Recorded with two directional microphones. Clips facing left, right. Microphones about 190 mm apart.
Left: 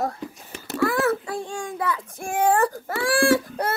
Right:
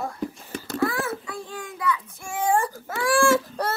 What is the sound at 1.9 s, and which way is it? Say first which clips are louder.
Speech: left 5 dB; 50° left (ahead or behind).